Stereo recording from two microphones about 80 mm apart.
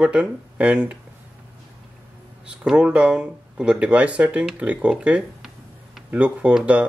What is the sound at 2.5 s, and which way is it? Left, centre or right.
Speech, centre.